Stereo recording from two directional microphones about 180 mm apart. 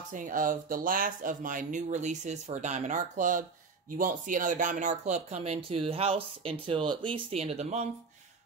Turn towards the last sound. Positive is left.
turn(degrees=-35)  # may be behind; listen again after turning